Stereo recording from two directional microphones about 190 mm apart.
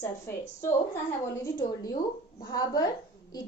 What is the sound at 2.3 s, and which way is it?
Speech, 20° left (ahead or behind).